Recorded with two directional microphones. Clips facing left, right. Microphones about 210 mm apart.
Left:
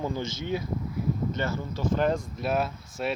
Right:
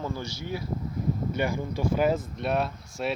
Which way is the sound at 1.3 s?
15° right (ahead or behind).